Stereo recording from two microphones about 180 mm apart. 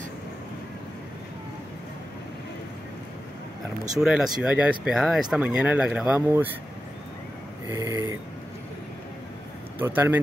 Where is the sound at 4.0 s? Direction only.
5° right (ahead or behind).